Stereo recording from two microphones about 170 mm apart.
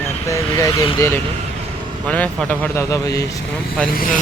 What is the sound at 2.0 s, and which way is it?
A man's voice, 10° left (ahead or behind).